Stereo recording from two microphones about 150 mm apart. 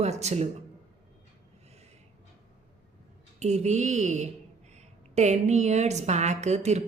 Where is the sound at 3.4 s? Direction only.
50° right (ahead or behind).